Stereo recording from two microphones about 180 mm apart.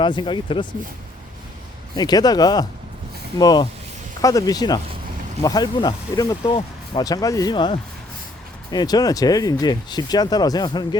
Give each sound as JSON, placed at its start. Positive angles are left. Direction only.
{"t": 0.0, "sound": "speech", "side_deg": 25}
{"t": 2.0, "sound": "speech", "side_deg": 20}